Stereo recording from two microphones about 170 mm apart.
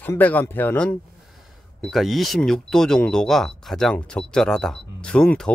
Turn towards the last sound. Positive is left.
turn(degrees=5)  # may be behind; listen again after turning